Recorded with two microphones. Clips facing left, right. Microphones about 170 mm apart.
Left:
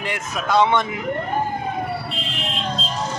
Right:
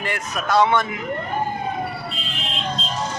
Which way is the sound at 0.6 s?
20° left (ahead or behind).